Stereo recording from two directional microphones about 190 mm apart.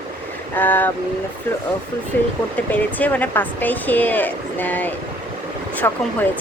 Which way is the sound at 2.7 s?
10° left (ahead or behind).